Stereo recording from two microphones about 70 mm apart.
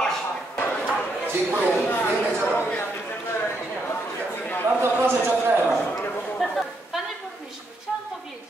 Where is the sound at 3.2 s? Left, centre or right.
Left.